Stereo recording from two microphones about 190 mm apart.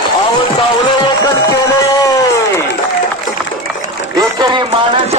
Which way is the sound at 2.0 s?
15° left (ahead or behind).